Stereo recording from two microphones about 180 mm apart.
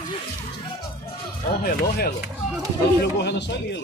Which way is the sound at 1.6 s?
60° left (ahead or behind).